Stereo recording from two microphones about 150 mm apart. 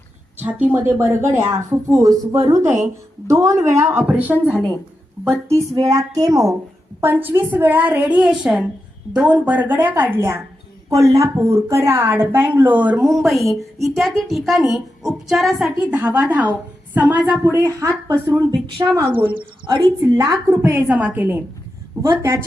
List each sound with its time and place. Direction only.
0.3 s a woman's voice: 10° right (ahead or behind)
4.5 s a woman's voice: 10° left (ahead or behind)
5.7 s a woman's voice: 25° right (ahead or behind)
13.1 s a woman's voice: centre (ahead or behind); by 19.8 s 30° right (ahead or behind)
20.1 s a woman's voice: 20° right (ahead or behind)